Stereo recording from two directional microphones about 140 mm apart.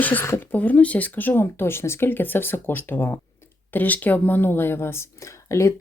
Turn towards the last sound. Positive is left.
turn(degrees=20)  # may be behind; listen again after turning